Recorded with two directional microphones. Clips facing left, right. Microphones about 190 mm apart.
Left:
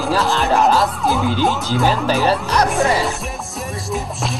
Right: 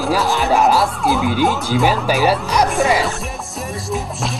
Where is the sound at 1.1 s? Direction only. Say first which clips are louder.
Right 2 dB; centre (ahead or behind).